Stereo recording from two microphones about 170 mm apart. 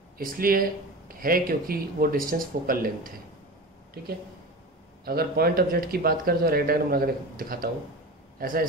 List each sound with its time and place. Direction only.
0.2 s speech: 55° right (ahead or behind)
5.0 s a man's voice: 65° right (ahead or behind)